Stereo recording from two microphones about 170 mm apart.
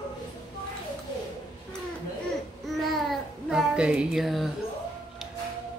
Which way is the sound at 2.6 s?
Centre (ahead or behind).